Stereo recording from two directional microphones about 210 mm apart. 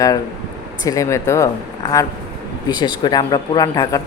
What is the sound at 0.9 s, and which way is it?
Speech, 15° left (ahead or behind).